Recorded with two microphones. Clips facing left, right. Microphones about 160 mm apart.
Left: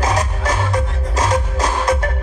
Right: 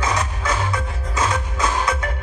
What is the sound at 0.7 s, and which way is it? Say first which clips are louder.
Music: left 5 dB; 40° left (ahead or behind).